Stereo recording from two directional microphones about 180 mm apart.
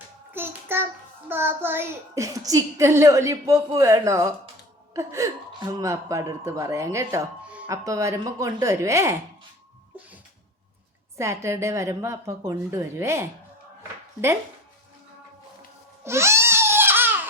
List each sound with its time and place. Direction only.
0.3 s child singing: 10° right (ahead or behind)
1.3 s a child's voice: 10° right (ahead or behind)
11.2 s a child's voice: 15° right (ahead or behind)
16.0 s baby cry: 15° right (ahead or behind)